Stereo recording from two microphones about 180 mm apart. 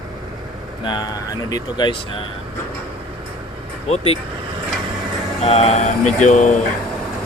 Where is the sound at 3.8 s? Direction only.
35° left (ahead or behind).